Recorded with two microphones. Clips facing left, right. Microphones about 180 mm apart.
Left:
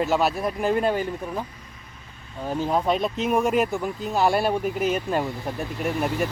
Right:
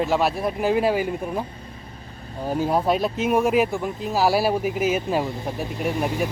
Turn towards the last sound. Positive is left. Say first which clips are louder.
# right 1 dB
turn(degrees=-15)  # may be behind; listen again after turning